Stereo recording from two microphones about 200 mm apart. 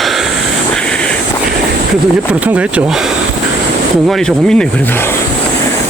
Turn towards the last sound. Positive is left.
turn(degrees=0)  # may be behind; listen again after turning